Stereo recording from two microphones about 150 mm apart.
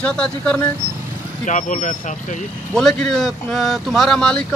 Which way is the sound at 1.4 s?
55° left (ahead or behind).